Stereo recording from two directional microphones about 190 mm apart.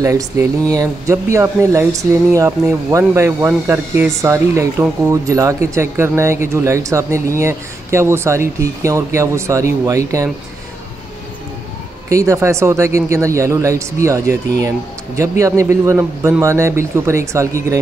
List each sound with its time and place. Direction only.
0.0 s speech: 15° right (ahead or behind)
12.1 s speech: 15° right (ahead or behind)